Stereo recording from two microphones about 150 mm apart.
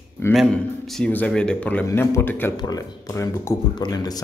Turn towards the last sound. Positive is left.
turn(degrees=25)  # may be behind; listen again after turning